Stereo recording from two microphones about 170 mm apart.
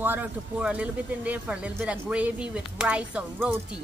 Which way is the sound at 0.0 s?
10° right (ahead or behind).